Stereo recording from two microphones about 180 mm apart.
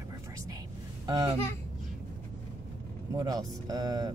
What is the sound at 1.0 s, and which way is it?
Speech, 20° right (ahead or behind).